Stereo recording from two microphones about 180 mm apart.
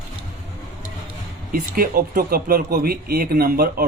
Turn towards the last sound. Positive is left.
turn(degrees=-55)  # may be behind; listen again after turning